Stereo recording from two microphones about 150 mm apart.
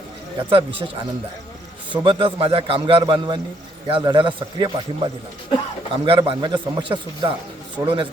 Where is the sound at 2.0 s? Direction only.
35° right (ahead or behind).